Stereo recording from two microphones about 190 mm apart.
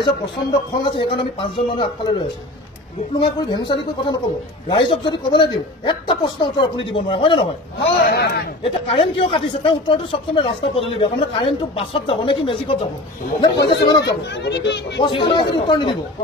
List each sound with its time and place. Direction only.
0.0 s speech: 25° left (ahead or behind)
8.1 s speech: 60° left (ahead or behind)
8.8 s speech: 30° left (ahead or behind)
13.6 s speech: 60° left (ahead or behind)
13.8 s speech: 20° left (ahead or behind)
14.3 s speech: 65° left (ahead or behind)
15.0 s speech: 25° left (ahead or behind)